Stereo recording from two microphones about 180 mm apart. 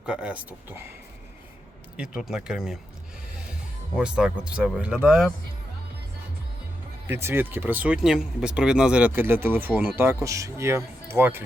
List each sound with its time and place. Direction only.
0.0 s speech: 5° right (ahead or behind)
2.0 s speech: 5° right (ahead or behind)
3.9 s speech: 5° right (ahead or behind)
7.1 s speech: 15° right (ahead or behind)